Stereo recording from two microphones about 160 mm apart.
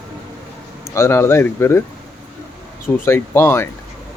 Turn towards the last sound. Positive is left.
turn(degrees=15)  # may be behind; listen again after turning